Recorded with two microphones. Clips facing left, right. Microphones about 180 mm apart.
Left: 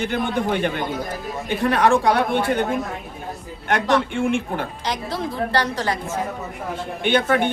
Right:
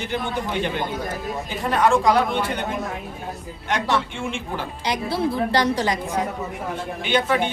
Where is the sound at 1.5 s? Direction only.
65° left (ahead or behind).